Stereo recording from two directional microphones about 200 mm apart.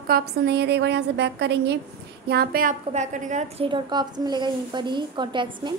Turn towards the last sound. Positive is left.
turn(degrees=-25)  # may be behind; listen again after turning